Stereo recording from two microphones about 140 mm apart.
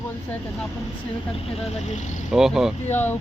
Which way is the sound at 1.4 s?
45° left (ahead or behind).